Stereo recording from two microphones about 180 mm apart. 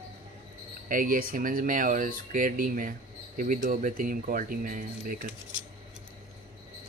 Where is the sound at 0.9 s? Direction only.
50° right (ahead or behind).